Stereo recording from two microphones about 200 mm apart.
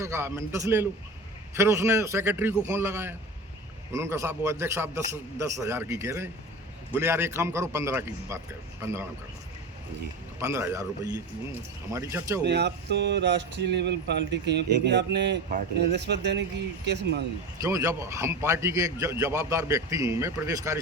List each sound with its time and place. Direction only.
0.0 s a man's voice: 15° right (ahead or behind)
10.4 s a man's voice: 15° right (ahead or behind)
12.5 s speech: 60° right (ahead or behind)
17.6 s a man's voice: 15° right (ahead or behind)